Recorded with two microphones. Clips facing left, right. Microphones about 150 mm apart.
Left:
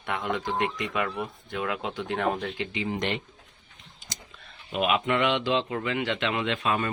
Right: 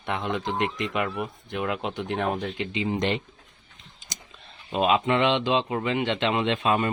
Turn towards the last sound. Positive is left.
turn(degrees=-25)  # may be behind; listen again after turning